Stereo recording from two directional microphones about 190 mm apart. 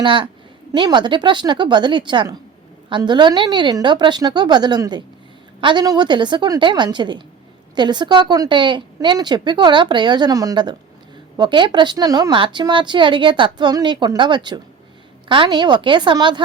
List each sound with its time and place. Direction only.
0.0 s speech: 25° right (ahead or behind)